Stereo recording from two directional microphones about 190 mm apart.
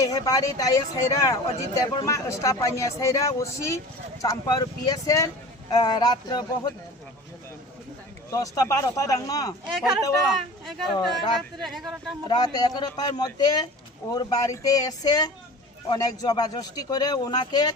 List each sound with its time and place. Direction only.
0.0 s speech: 20° left (ahead or behind)
8.3 s speech: 20° left (ahead or behind)
9.7 s speech: 5° right (ahead or behind)
12.3 s speech: 20° left (ahead or behind)